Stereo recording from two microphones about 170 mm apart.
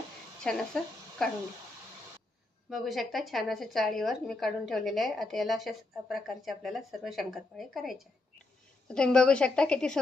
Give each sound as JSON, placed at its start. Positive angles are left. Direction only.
{"t": 0.4, "sound": "a woman's voice", "side_deg": 5}
{"t": 2.6, "sound": "a woman's voice", "side_deg": 0}